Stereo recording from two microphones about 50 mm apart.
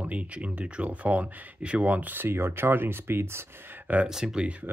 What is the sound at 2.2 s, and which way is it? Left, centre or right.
Speech, right.